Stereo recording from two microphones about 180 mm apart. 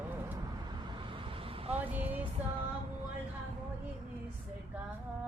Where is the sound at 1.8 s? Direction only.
10° right (ahead or behind).